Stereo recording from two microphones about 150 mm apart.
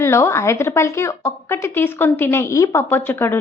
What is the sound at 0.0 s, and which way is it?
A woman's voice, 20° left (ahead or behind).